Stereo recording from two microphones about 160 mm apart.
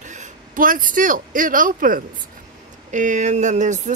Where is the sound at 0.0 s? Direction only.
50° right (ahead or behind).